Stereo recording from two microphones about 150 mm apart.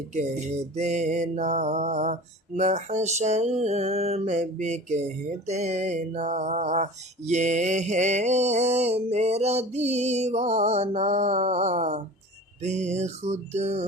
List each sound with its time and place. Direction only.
0.1 s mantra: 50° right (ahead or behind)